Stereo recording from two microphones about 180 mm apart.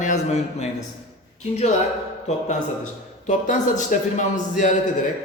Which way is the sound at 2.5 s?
45° left (ahead or behind).